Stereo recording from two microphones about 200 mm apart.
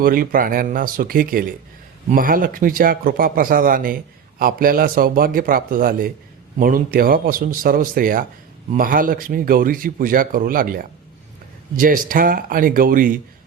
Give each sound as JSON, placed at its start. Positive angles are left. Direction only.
{"t": 0.0, "sound": "speech", "side_deg": -45}